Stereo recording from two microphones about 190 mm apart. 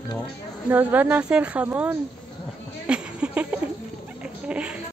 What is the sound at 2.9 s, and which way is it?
Music, 5° right (ahead or behind).